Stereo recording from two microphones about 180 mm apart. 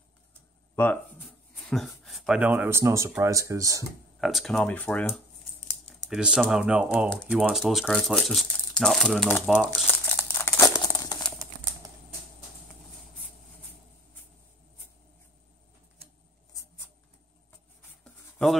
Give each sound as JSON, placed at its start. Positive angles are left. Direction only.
{"t": 0.7, "sound": "speech", "side_deg": 10}
{"t": 4.2, "sound": "speech", "side_deg": 0}
{"t": 6.0, "sound": "speech", "side_deg": -5}
{"t": 10.8, "sound": "crumpling", "side_deg": 20}